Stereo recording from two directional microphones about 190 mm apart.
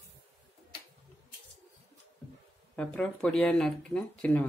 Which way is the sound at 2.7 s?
5° left (ahead or behind).